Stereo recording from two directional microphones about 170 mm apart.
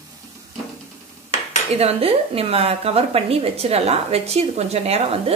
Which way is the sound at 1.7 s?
35° right (ahead or behind).